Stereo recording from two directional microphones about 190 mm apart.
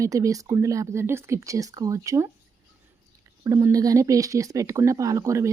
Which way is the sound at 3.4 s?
20° right (ahead or behind).